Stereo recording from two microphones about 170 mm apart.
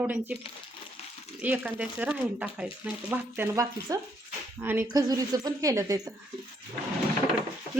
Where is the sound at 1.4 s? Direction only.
10° right (ahead or behind).